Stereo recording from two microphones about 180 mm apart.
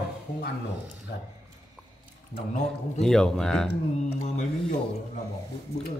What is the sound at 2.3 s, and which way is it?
Speech, 40° left (ahead or behind).